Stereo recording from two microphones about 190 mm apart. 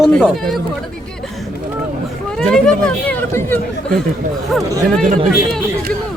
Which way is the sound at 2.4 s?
5° left (ahead or behind).